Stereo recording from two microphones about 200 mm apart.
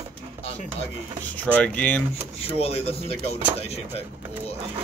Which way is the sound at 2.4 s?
30° left (ahead or behind).